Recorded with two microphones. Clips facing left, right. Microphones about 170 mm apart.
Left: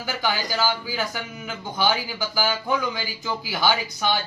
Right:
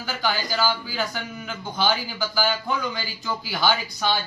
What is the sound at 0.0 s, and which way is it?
Speech, 15° left (ahead or behind).